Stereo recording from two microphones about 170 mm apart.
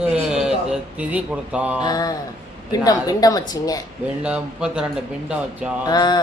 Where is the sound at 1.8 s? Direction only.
25° left (ahead or behind).